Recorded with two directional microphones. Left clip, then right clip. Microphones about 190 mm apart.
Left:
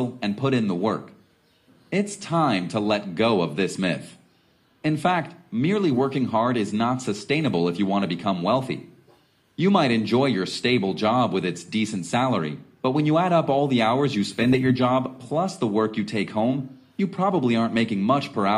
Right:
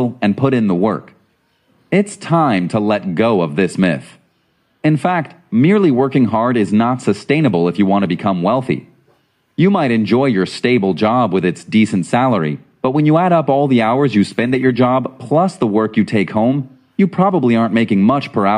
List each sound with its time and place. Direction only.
0.0 s speech: 45° right (ahead or behind)